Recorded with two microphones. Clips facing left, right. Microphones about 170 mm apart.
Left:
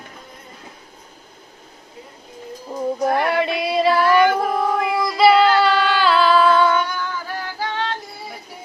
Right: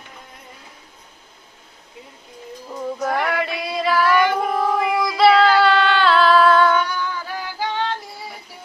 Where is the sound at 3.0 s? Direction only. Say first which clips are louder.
Left 3 dB; 20° left (ahead or behind).